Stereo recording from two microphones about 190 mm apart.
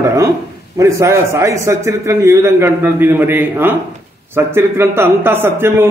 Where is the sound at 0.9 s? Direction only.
15° right (ahead or behind).